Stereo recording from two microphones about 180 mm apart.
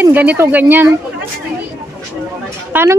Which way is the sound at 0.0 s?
10° right (ahead or behind).